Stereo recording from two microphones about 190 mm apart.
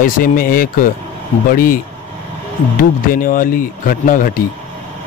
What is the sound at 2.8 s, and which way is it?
Speech, 45° left (ahead or behind).